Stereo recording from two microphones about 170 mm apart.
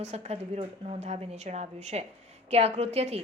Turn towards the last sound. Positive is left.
turn(degrees=-40)  # may be behind; listen again after turning